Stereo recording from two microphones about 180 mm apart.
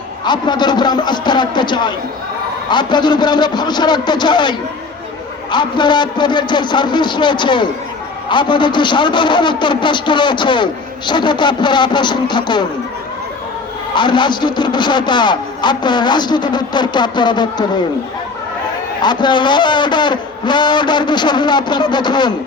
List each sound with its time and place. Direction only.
0.3 s a man's voice: 25° left (ahead or behind)
13.9 s a man's voice: 25° left (ahead or behind)
19.0 s a man's voice: 25° left (ahead or behind)